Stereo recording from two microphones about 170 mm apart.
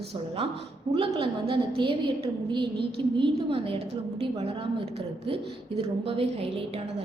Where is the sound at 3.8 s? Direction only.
85° right.